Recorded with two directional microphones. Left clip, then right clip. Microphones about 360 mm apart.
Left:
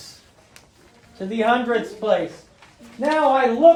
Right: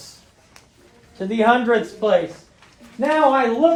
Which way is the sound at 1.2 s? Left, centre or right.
Right.